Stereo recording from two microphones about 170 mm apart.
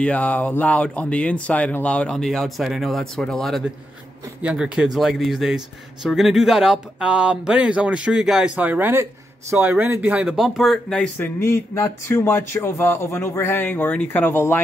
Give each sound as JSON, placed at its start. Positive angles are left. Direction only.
{"t": 0.0, "sound": "speech", "side_deg": 10}
{"t": 11.3, "sound": "speech", "side_deg": 15}